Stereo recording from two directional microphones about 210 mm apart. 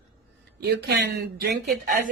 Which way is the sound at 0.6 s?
50° right (ahead or behind).